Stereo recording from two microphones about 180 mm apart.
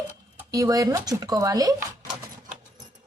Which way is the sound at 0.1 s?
15° right (ahead or behind).